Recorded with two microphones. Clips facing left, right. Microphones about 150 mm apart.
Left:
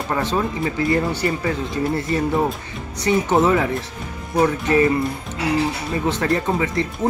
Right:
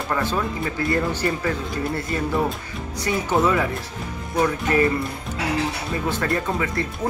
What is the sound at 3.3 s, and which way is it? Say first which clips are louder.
Speech: left 2 dB; 25° left (ahead or behind).